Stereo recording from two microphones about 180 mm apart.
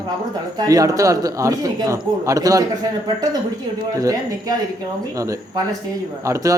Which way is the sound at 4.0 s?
20° right (ahead or behind).